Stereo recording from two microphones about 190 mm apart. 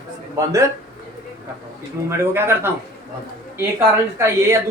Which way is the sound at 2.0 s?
10° right (ahead or behind).